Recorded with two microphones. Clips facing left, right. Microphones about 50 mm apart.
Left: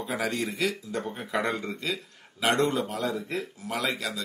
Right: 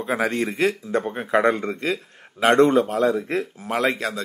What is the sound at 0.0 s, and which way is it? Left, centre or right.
Speech, right.